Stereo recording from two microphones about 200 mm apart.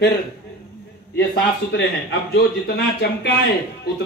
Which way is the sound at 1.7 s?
60° left (ahead or behind).